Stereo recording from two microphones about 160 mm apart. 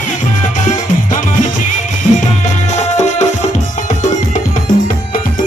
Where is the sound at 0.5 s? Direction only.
55° left (ahead or behind).